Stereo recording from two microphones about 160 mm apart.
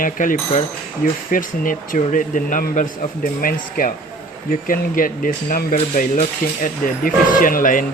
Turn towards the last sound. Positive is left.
turn(degrees=60)  # may be behind; listen again after turning